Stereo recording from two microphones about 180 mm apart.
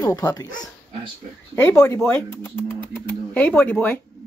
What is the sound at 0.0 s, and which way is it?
Speech, 20° left (ahead or behind).